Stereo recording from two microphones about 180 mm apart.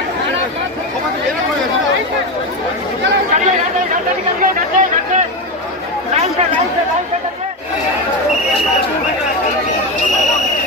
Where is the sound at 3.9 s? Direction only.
45° right (ahead or behind).